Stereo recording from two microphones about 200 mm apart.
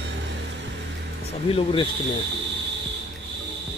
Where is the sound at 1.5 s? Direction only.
25° left (ahead or behind).